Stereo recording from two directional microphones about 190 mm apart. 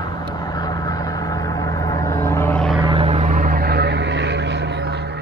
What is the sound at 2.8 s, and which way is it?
Vehicle, 25° right (ahead or behind).